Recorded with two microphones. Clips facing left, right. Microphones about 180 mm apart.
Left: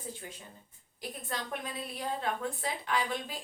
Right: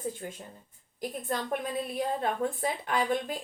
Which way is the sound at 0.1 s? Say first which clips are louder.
Right 5 dB; 50° right (ahead or behind).